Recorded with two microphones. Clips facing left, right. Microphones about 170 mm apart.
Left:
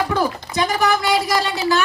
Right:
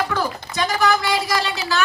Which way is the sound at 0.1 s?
20° left (ahead or behind).